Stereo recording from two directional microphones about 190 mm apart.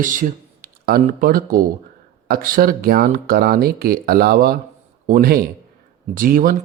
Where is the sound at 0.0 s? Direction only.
45° right (ahead or behind).